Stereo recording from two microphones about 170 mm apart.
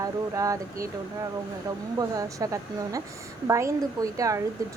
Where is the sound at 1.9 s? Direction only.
20° right (ahead or behind).